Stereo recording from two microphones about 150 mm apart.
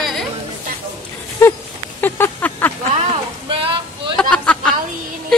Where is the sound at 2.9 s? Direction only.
40° right (ahead or behind).